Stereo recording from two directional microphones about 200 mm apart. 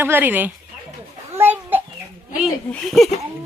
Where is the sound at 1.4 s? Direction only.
10° right (ahead or behind).